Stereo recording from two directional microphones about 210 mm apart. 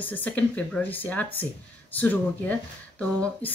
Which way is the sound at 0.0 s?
10° left (ahead or behind).